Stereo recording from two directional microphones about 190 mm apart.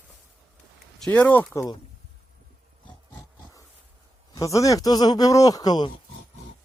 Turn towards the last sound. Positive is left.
turn(degrees=20)  # may be behind; listen again after turning